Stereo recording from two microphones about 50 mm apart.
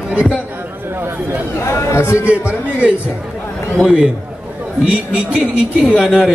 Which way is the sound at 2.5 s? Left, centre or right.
Right.